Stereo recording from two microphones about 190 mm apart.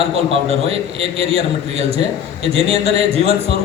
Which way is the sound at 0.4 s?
30° right (ahead or behind).